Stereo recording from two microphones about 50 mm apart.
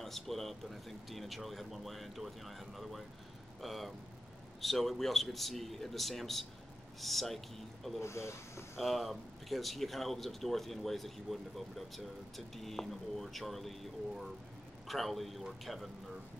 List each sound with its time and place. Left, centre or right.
0.0 s speech: centre
8.0 s speech: left
8.7 s speech: centre